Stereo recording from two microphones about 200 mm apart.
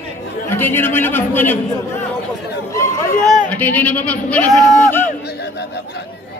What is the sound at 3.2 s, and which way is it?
Speech, 5° left (ahead or behind).